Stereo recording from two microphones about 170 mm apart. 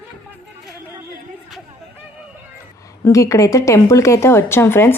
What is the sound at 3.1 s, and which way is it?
Speech, 20° left (ahead or behind).